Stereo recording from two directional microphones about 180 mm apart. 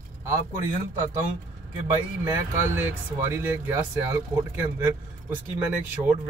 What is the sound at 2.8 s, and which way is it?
Speech, 10° right (ahead or behind).